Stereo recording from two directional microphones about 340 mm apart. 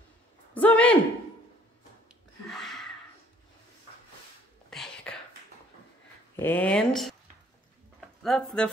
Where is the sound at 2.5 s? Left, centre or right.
Centre.